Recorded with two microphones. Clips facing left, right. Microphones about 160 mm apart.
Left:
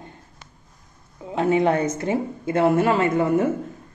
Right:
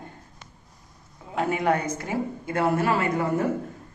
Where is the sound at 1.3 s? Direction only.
20° left (ahead or behind).